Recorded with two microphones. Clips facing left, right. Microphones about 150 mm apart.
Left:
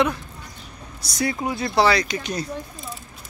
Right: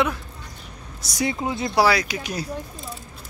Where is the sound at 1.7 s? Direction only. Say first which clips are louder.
Left 1 dB; 5° right (ahead or behind).